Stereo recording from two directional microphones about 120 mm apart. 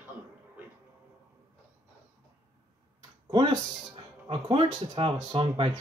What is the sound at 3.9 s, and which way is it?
Speech, 45° right (ahead or behind).